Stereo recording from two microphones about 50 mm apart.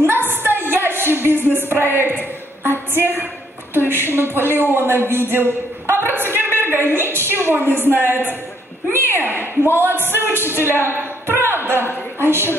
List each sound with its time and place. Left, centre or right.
0.0 s a sound: right
3.7 s speech: right
6.3 s a sound: right
7.7 s speech: right
10.9 s music: right
12.2 s speech: right